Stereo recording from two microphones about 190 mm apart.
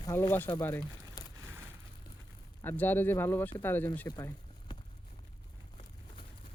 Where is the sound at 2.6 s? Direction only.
10° left (ahead or behind).